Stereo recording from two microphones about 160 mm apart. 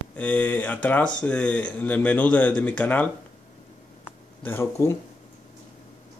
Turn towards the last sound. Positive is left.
turn(degrees=15)  # may be behind; listen again after turning